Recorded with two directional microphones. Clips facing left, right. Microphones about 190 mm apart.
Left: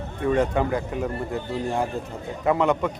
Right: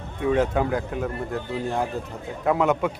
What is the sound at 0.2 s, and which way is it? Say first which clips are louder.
Speech: even; 5° right (ahead or behind).